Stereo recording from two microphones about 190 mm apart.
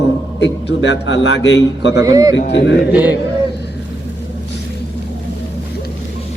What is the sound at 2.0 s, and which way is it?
Speech, 20° right (ahead or behind).